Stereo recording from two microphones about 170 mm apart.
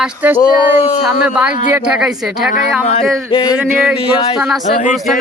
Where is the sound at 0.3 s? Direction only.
25° left (ahead or behind).